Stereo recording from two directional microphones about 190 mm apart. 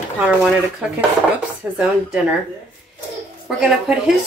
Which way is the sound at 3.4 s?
5° right (ahead or behind).